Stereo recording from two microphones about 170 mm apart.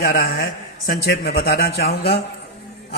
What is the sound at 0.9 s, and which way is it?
Speech, 65° left (ahead or behind).